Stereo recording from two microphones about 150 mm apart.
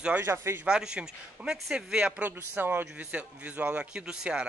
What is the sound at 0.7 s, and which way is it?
Speech, 5° right (ahead or behind).